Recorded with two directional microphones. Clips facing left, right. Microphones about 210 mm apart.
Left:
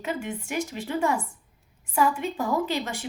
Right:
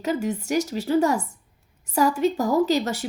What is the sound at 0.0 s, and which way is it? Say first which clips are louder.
Speech: right 6 dB; 40° right (ahead or behind).